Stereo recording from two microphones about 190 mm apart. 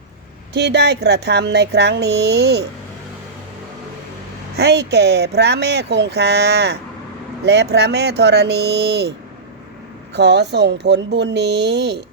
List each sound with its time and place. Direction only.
0.5 s speech: 65° right (ahead or behind)
4.5 s speech: 60° right (ahead or behind)
10.2 s speech: 60° right (ahead or behind)